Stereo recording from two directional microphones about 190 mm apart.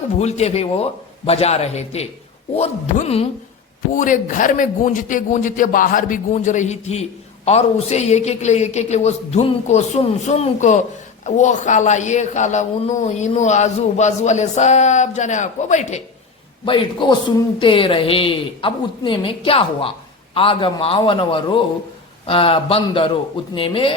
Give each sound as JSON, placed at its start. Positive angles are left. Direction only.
{"t": 0.2, "sound": "a man's voice", "side_deg": 35}
{"t": 3.9, "sound": "a man's voice", "side_deg": 45}
{"t": 16.6, "sound": "speech", "side_deg": 25}